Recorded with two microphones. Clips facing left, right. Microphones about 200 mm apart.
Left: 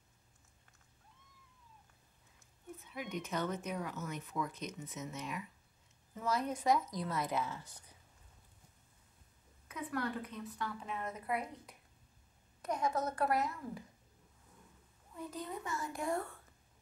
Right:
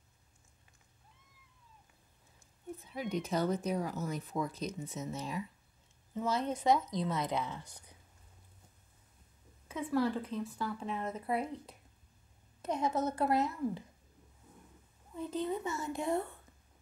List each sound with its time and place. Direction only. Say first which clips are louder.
2.8 s a woman's voice: right 5 dB; 35° right (ahead or behind); by 7.8 s 15° right (ahead or behind)
9.7 s a woman's voice: right 7 dB; 25° right (ahead or behind)
15.1 s a woman's voice: right 8 dB; 25° right (ahead or behind)